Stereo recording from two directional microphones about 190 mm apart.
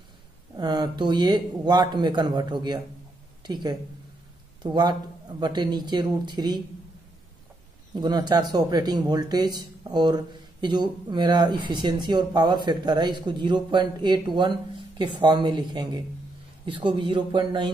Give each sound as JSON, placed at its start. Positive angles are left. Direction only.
{"t": 0.6, "sound": "speech", "side_deg": -20}
{"t": 7.9, "sound": "speech", "side_deg": -20}